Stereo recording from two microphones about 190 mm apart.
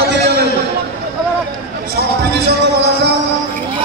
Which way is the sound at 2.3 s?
60° right (ahead or behind).